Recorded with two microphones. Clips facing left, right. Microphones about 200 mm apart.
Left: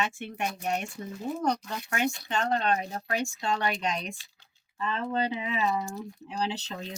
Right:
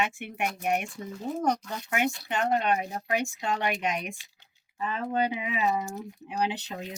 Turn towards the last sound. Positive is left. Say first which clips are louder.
# right 1 dB
turn(degrees=-15)  # may be behind; listen again after turning